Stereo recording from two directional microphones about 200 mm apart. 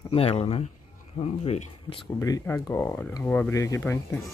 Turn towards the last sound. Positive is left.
turn(degrees=10)  # may be behind; listen again after turning